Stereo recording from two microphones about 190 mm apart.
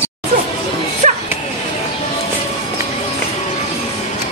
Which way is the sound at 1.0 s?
40° right (ahead or behind).